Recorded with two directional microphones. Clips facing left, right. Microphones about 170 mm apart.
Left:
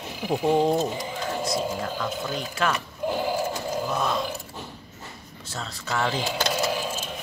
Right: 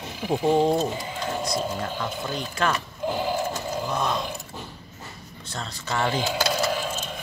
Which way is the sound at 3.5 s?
5° left (ahead or behind).